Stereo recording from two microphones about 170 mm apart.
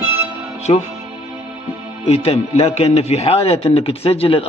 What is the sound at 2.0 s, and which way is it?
A man's voice, 35° left (ahead or behind).